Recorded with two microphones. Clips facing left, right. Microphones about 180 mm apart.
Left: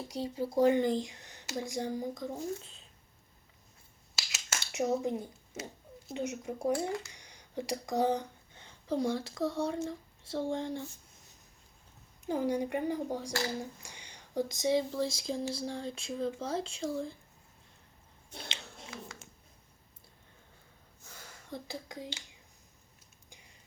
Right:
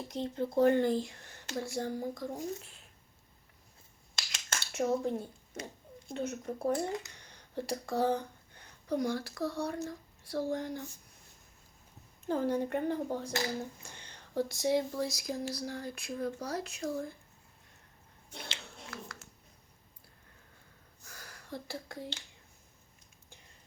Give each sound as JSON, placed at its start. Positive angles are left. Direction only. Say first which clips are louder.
{"t": 0.1, "sound": "speech", "louder": "right 1 dB", "side_deg": 5}
{"t": 4.1, "sound": "a sound", "louder": "even", "side_deg": 5}
{"t": 6.1, "sound": "speech", "louder": "even", "side_deg": 15}
{"t": 6.7, "sound": "speech", "louder": "even", "side_deg": -20}
{"t": 7.1, "sound": "speech", "louder": "even", "side_deg": 15}
{"t": 12.2, "sound": "speech", "louder": "even", "side_deg": 15}
{"t": 13.6, "sound": "a sound", "louder": "even", "side_deg": 10}
{"t": 14.8, "sound": "speech", "louder": "left 2 dB", "side_deg": 25}
{"t": 21.1, "sound": "a sound", "louder": "even", "side_deg": 25}